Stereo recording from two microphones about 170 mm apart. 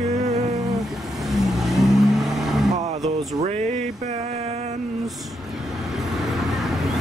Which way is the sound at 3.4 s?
40° right (ahead or behind).